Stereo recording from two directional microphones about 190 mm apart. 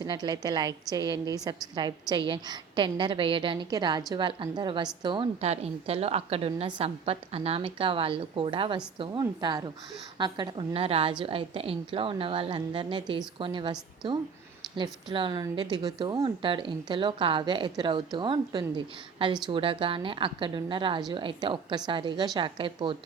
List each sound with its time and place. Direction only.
0.0 s a woman's voice: 20° right (ahead or behind)